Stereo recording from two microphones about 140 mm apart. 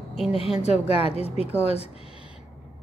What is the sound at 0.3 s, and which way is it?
Speech, 45° left (ahead or behind).